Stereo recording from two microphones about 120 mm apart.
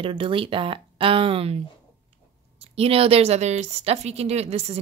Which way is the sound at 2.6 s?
55° right (ahead or behind).